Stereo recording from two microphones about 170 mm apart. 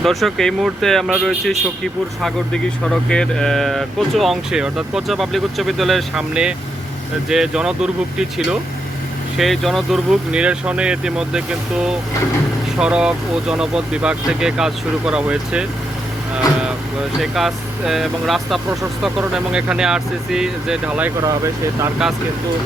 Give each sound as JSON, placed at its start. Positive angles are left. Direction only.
{"t": 0.0, "sound": "speech", "side_deg": 0}
{"t": 9.4, "sound": "speech", "side_deg": 0}
{"t": 17.2, "sound": "speech", "side_deg": 0}
{"t": 21.2, "sound": "speech", "side_deg": -20}